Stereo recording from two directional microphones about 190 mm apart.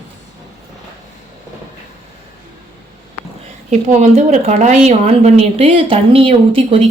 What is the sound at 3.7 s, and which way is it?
Speech, 35° right (ahead or behind).